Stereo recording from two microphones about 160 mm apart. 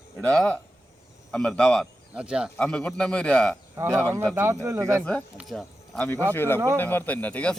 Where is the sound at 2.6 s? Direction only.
5° left (ahead or behind).